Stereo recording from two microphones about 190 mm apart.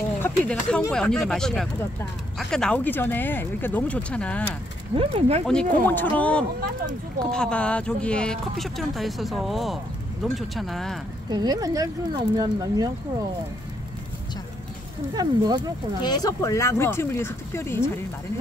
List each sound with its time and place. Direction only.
0.2 s speech: 5° left (ahead or behind)
4.9 s speech: 30° right (ahead or behind)
5.5 s speech: 5° left (ahead or behind)
11.2 s speech: 20° right (ahead or behind)
15.1 s speech: 20° right (ahead or behind)
16.0 s speech: 20° left (ahead or behind)